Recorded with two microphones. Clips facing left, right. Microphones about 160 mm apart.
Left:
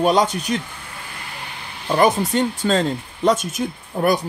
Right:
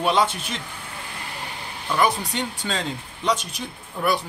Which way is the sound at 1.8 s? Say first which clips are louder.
Left 5 dB; 45° left (ahead or behind).